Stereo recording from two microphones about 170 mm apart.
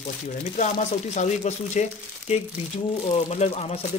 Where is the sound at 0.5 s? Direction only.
45° left (ahead or behind).